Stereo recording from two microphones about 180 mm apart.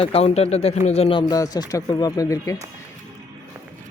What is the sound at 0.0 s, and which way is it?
Speech, 30° left (ahead or behind).